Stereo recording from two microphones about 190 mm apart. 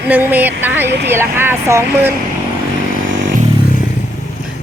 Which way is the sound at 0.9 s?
60° right (ahead or behind).